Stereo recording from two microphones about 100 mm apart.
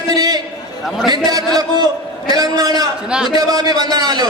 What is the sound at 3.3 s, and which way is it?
Speech, 40° right (ahead or behind).